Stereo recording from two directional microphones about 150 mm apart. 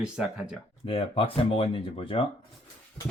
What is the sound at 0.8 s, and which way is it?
Speech, 40° left (ahead or behind).